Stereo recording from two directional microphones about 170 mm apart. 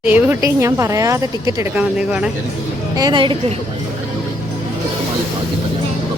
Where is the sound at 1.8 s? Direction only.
5° right (ahead or behind).